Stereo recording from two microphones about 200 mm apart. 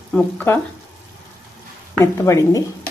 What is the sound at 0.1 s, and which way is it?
Speech, 10° left (ahead or behind).